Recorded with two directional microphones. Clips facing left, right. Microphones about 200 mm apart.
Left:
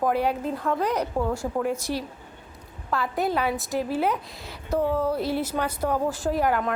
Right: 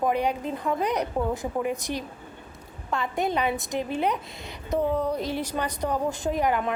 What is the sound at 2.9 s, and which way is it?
A woman's voice, 5° left (ahead or behind).